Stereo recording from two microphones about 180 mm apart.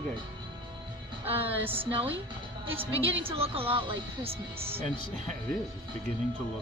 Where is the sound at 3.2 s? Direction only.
30° right (ahead or behind).